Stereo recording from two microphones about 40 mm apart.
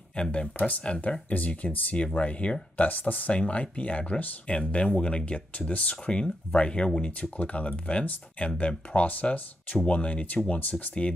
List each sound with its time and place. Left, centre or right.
0.1 s speech: left
0.6 s speech: left
1.3 s speech: left
9.0 s speech: left
10.5 s speech: left